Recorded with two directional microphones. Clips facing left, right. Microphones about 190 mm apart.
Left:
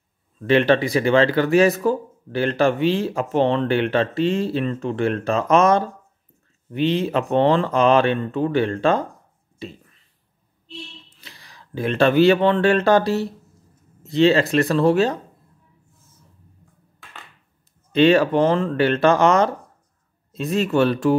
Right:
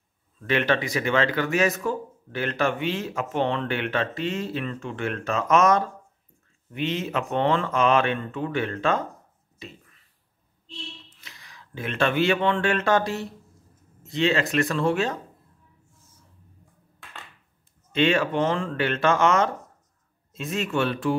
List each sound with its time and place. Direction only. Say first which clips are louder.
0.4 s speech: left 7 dB; 30° left (ahead or behind)
11.1 s speech: left 3 dB; 35° left (ahead or behind)
17.9 s speech: left 7 dB; 35° left (ahead or behind)